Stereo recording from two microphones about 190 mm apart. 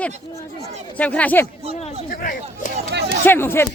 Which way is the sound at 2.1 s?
45° left (ahead or behind).